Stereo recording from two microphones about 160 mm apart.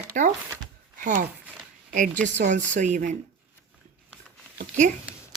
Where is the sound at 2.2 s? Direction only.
50° right (ahead or behind).